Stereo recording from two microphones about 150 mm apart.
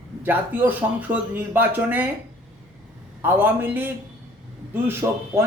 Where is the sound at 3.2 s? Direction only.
15° right (ahead or behind).